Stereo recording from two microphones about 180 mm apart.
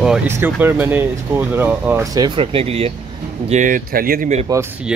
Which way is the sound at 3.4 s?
45° right (ahead or behind).